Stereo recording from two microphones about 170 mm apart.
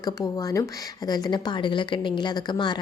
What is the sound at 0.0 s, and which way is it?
Speech, 20° left (ahead or behind).